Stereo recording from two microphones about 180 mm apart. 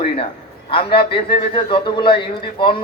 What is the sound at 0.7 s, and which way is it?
A man's voice, 30° left (ahead or behind).